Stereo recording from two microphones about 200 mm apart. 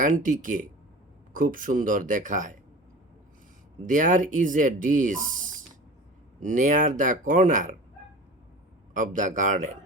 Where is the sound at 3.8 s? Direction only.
40° right (ahead or behind).